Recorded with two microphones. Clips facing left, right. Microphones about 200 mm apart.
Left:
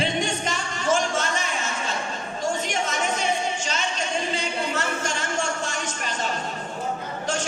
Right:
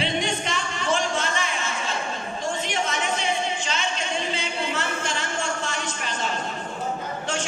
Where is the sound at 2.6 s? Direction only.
40° left (ahead or behind).